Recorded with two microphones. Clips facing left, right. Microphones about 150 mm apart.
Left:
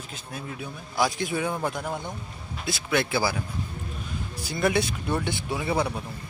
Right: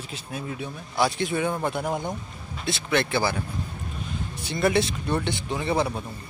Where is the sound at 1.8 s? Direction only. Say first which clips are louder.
Right 4 dB; 15° right (ahead or behind).